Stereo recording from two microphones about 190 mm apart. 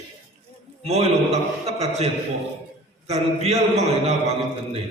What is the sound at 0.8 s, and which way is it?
A man's voice, 35° right (ahead or behind).